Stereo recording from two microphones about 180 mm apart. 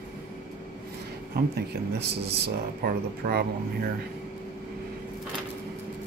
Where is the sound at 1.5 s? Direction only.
60° right (ahead or behind).